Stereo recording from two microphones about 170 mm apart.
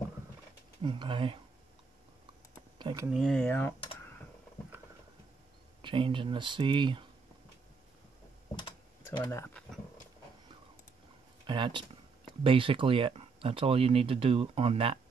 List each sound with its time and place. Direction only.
0.8 s speech: 30° right (ahead or behind)
2.8 s speech: 25° right (ahead or behind)
3.1 s speech: centre (ahead or behind)
5.8 s speech: 30° right (ahead or behind)
8.5 s typing: 30° left (ahead or behind)
9.3 s speech: 15° left (ahead or behind)
11.4 s speech: 30° right (ahead or behind)